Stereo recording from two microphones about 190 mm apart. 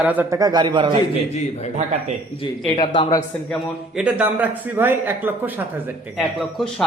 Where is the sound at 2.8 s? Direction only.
25° left (ahead or behind).